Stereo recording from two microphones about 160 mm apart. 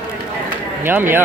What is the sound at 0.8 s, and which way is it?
Speech, 15° right (ahead or behind).